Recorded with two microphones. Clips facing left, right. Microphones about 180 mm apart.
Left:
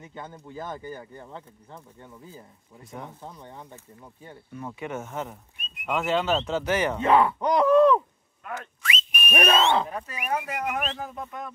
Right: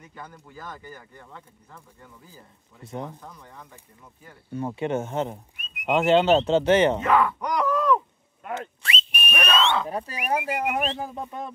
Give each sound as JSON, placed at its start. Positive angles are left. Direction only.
{"t": 0.0, "sound": "speech", "side_deg": 25}
{"t": 2.8, "sound": "speech", "side_deg": -30}
{"t": 3.2, "sound": "speech", "side_deg": 25}
{"t": 4.5, "sound": "speech", "side_deg": -30}
{"t": 7.0, "sound": "speech", "side_deg": 25}
{"t": 8.5, "sound": "whistle", "side_deg": -30}
{"t": 9.5, "sound": "speech", "side_deg": 30}
{"t": 9.8, "sound": "speech", "side_deg": -35}